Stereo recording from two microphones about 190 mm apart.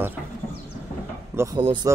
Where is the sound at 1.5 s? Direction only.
25° right (ahead or behind).